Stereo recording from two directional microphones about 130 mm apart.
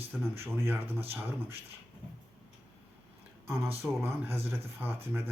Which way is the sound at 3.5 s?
20° right (ahead or behind).